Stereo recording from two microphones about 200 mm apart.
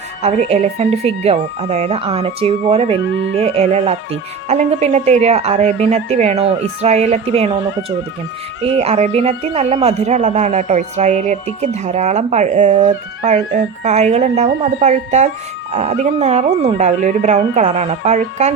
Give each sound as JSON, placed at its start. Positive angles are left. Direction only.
{"t": 0.2, "sound": "speech", "side_deg": -35}